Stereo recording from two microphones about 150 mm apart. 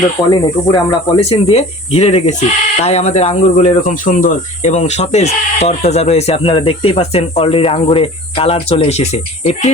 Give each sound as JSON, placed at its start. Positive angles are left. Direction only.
{"t": 0.3, "sound": "speech", "side_deg": 25}
{"t": 1.3, "sound": "speech", "side_deg": 40}